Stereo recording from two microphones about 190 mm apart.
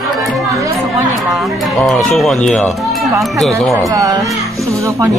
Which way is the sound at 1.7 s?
Centre (ahead or behind).